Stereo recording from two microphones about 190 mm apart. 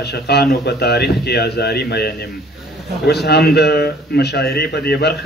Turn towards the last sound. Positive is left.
turn(degrees=60)  # may be behind; listen again after turning